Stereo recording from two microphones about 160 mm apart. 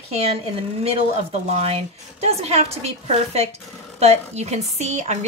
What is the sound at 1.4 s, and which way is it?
A woman's voice, 45° right (ahead or behind).